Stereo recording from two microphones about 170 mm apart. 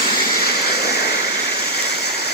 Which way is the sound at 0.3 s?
65° left (ahead or behind).